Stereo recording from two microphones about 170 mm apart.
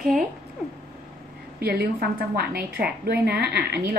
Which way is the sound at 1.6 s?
70° right (ahead or behind).